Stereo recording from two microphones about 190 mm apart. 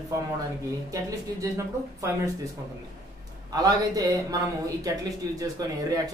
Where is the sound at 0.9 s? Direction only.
15° right (ahead or behind).